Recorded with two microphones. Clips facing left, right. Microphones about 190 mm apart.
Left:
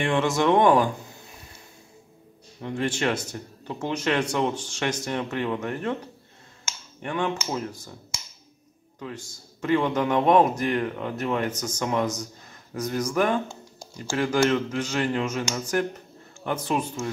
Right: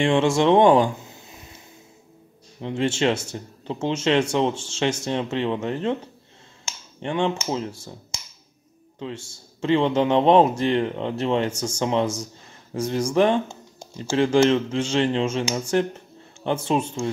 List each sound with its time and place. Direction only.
0.0 s speech: 25° right (ahead or behind)
2.6 s speech: 25° right (ahead or behind)